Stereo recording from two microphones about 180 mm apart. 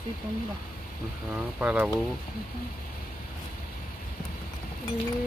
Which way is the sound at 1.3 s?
5° right (ahead or behind).